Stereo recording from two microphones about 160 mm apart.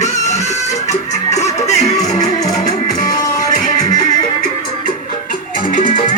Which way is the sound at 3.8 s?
25° left (ahead or behind).